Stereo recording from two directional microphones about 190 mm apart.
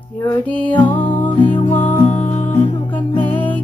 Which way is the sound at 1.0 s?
25° left (ahead or behind).